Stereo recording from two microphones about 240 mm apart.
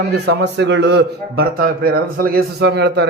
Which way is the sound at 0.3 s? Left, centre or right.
Right.